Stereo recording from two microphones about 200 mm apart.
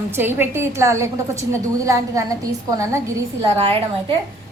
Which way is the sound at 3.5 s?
30° right (ahead or behind).